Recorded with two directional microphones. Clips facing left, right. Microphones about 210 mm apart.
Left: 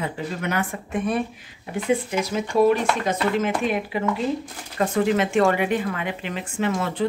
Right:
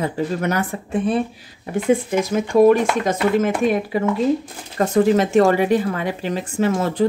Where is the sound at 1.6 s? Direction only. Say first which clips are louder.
Right 5 dB; 45° right (ahead or behind).